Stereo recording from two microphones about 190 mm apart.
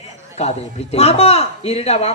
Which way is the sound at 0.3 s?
35° left (ahead or behind).